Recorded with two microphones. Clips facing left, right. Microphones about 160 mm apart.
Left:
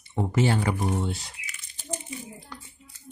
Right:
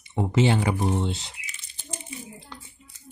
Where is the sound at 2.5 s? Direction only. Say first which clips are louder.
Even; 20° right (ahead or behind).